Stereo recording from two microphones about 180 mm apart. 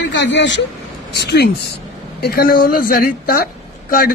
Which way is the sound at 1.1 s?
65° left (ahead or behind).